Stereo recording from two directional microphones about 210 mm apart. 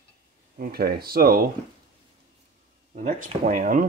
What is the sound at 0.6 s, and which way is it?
Speech, 45° right (ahead or behind).